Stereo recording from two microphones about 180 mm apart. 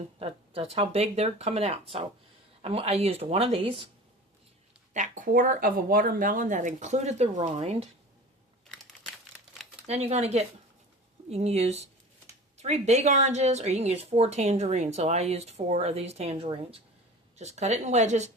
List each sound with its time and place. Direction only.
0.2 s a woman's voice: 30° right (ahead or behind)
4.9 s speech: 45° right (ahead or behind)
9.8 s a woman's voice: 35° right (ahead or behind)